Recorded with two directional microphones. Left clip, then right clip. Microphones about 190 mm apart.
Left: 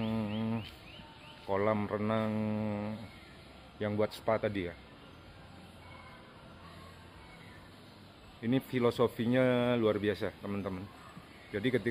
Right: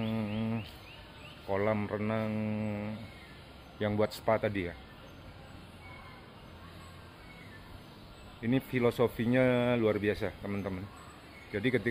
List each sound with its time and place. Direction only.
0.0 s insect: 10° left (ahead or behind)
1.5 s speech: 15° left (ahead or behind)
3.8 s speech: centre (ahead or behind)
8.4 s speech: 10° left (ahead or behind)